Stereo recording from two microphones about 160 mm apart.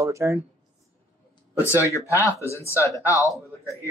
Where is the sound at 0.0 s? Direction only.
20° right (ahead or behind).